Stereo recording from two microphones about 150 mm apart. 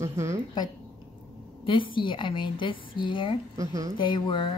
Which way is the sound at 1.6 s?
35° left (ahead or behind).